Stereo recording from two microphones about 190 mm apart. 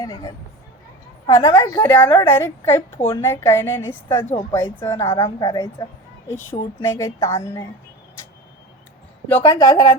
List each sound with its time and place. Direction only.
0.0 s a woman's voice: 20° left (ahead or behind)
9.4 s a woman's voice: 20° left (ahead or behind)